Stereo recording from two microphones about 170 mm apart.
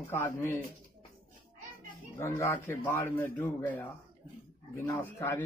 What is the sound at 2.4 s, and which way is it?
A man's voice, 15° left (ahead or behind).